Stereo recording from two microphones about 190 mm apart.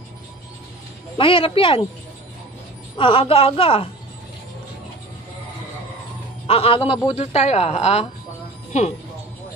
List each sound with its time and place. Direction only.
1.1 s speech: 25° left (ahead or behind)
3.0 s speech: 30° left (ahead or behind)
6.4 s a woman's voice: 30° left (ahead or behind)